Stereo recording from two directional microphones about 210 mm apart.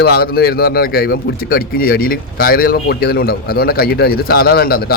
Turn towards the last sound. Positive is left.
turn(degrees=45)  # may be behind; listen again after turning